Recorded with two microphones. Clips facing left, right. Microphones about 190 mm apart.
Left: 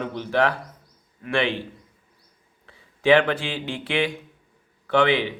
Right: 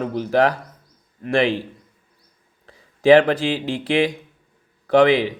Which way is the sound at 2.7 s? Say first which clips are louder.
Right 5 dB; 40° right (ahead or behind).